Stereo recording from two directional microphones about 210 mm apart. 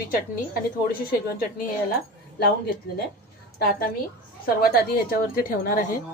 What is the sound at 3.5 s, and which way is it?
A woman's voice, 45° left (ahead or behind).